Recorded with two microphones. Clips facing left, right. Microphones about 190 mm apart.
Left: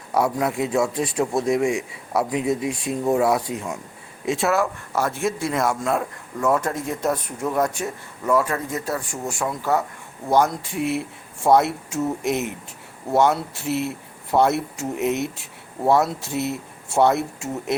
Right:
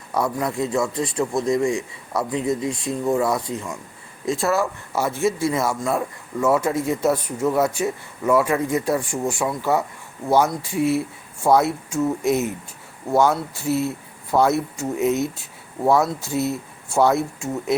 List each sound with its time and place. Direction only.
0.6 s speech: 10° left (ahead or behind)
4.3 s speech: 5° left (ahead or behind)
10.6 s speech: 60° left (ahead or behind)
11.4 s speech: centre (ahead or behind)